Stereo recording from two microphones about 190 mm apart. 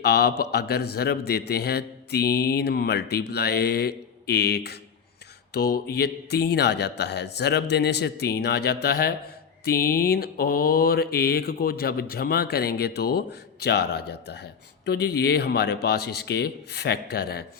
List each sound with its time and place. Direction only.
0.0 s a man's voice: 55° left (ahead or behind)
9.6 s mantra: 50° left (ahead or behind)
14.8 s a man's voice: 60° left (ahead or behind)